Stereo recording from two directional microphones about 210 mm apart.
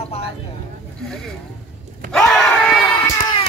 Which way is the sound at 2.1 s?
Centre (ahead or behind).